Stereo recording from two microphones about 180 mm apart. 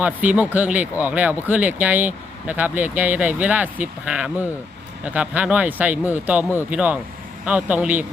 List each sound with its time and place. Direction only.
0.0 s speech: 10° right (ahead or behind)